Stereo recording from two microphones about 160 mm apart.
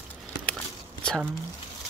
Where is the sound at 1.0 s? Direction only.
5° left (ahead or behind).